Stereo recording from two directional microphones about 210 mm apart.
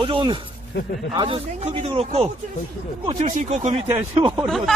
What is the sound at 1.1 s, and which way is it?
Speech, 25° right (ahead or behind).